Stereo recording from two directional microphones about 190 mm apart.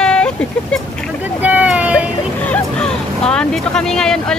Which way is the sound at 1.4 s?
5° right (ahead or behind).